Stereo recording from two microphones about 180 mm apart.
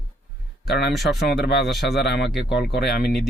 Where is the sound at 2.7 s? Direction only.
60° left (ahead or behind).